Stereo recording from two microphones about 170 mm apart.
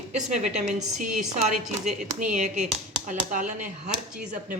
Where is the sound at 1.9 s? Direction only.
50° right (ahead or behind).